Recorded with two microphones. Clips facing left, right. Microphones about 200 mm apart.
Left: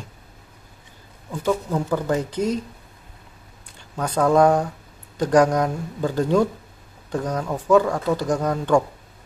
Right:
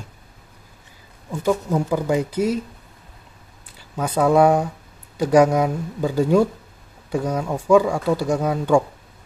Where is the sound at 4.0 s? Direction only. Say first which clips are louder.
Right 1 dB; 5° right (ahead or behind).